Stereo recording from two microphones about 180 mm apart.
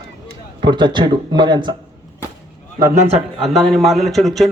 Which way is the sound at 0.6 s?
25° right (ahead or behind).